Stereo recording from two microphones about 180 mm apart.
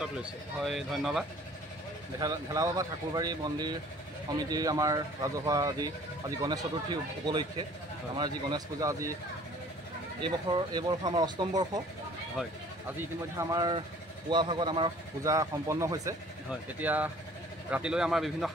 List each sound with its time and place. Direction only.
0.0 s speech: centre (ahead or behind)
2.1 s speech: 20° right (ahead or behind)
10.2 s speech: 25° right (ahead or behind)
13.4 s speech: 20° right (ahead or behind); by 18.5 s centre (ahead or behind)